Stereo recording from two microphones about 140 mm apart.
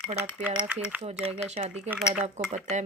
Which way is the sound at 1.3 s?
50° right (ahead or behind).